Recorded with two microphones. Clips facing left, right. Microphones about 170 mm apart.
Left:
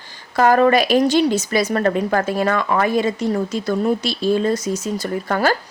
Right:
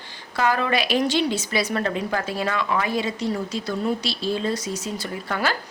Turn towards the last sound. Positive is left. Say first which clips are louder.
# left 7 dB
turn(degrees=45)  # may be behind; listen again after turning